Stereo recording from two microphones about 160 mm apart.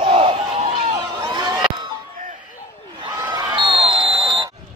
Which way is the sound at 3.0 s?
30° right (ahead or behind).